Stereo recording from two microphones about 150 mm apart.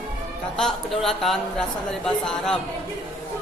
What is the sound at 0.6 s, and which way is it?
A man's voice, centre (ahead or behind).